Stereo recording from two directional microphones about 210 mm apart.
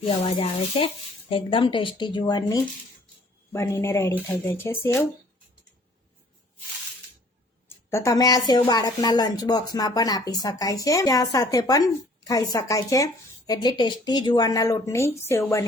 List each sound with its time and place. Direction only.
0.1 s a woman's voice: 25° left (ahead or behind); by 5.0 s 10° left (ahead or behind)
7.9 s a woman's voice: 15° left (ahead or behind)